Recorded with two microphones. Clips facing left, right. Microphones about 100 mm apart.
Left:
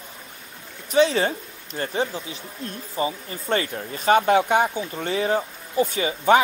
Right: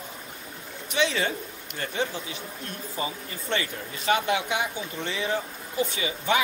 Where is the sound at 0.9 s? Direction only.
35° left (ahead or behind).